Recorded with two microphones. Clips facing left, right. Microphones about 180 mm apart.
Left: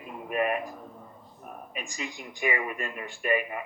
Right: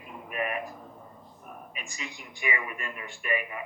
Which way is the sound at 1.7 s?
35° left (ahead or behind).